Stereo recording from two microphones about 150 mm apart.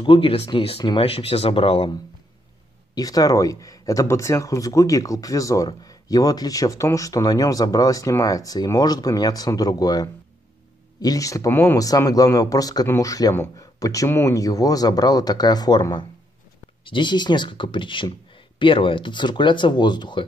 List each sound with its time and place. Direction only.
0.0 s speech: 35° left (ahead or behind)
2.9 s speech: 25° left (ahead or behind)